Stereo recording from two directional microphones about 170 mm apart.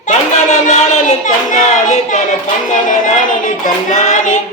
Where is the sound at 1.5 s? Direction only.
45° left (ahead or behind).